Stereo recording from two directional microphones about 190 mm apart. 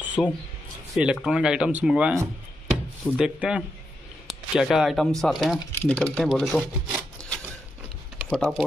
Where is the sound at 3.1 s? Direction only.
5° right (ahead or behind).